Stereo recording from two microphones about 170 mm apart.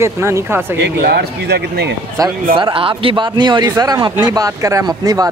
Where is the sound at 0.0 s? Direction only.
15° right (ahead or behind).